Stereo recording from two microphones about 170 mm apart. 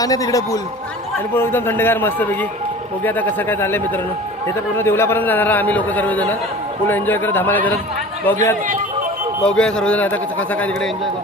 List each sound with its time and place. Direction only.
0.0 s a man's voice: 20° left (ahead or behind)